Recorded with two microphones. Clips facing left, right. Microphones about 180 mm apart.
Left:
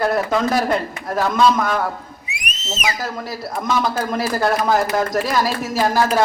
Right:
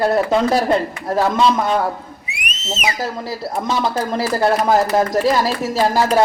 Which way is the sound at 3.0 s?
25° right (ahead or behind).